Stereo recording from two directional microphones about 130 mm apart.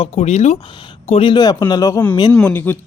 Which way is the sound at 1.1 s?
45° left (ahead or behind).